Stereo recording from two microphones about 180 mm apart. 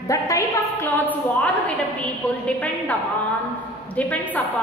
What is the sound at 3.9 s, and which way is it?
Speech, 10° left (ahead or behind).